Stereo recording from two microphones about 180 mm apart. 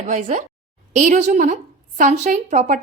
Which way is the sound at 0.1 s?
45° right (ahead or behind).